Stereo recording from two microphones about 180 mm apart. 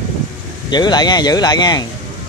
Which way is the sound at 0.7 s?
25° left (ahead or behind).